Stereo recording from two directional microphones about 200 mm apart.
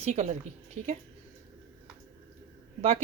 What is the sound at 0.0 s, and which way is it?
Speech, 35° right (ahead or behind).